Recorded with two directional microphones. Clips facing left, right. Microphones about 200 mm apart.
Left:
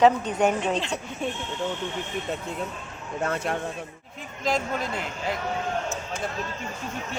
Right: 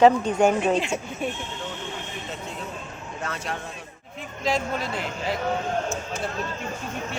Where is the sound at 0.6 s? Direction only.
10° right (ahead or behind).